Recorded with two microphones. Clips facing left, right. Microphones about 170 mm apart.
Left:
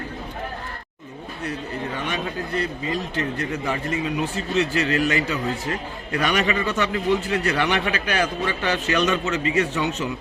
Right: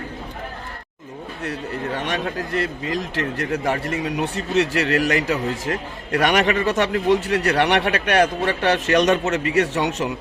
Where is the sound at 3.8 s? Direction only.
70° right (ahead or behind).